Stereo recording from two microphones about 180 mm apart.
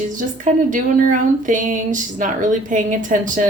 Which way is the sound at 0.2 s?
45° right (ahead or behind).